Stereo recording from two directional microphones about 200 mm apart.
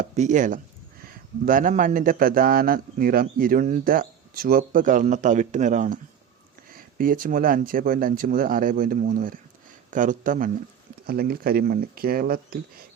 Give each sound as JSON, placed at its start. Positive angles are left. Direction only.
{"t": 0.0, "sound": "a man's voice", "side_deg": -40}